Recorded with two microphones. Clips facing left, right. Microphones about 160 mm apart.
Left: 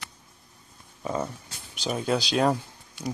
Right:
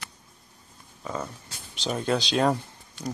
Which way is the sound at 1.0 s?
20° left (ahead or behind).